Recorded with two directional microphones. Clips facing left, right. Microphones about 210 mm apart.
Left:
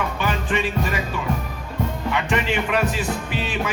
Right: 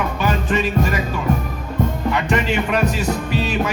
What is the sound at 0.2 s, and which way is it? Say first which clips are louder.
Music: right 5 dB; 40° right (ahead or behind).